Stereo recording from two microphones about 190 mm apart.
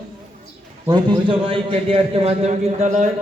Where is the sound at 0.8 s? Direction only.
25° right (ahead or behind).